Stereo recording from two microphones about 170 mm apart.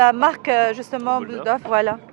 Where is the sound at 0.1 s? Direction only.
15° right (ahead or behind).